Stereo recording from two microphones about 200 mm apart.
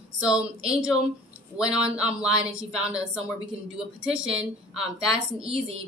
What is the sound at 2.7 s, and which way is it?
Speech, 5° right (ahead or behind).